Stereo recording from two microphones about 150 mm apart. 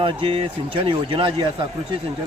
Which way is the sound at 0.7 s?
35° right (ahead or behind).